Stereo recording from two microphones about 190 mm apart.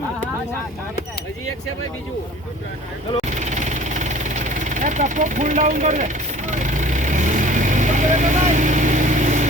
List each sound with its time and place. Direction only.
3.2 s vehicle: 40° right (ahead or behind)